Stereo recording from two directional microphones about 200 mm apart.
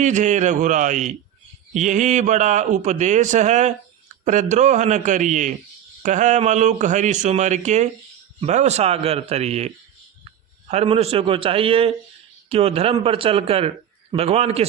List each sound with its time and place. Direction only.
0.0 s a man's voice: 35° right (ahead or behind)